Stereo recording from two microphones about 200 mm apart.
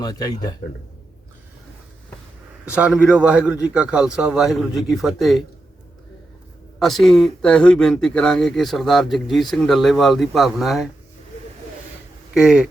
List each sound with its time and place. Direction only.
0.0 s speech: 20° left (ahead or behind)
2.6 s speech: 5° right (ahead or behind)
6.7 s speech: centre (ahead or behind)
12.3 s speech: 5° right (ahead or behind)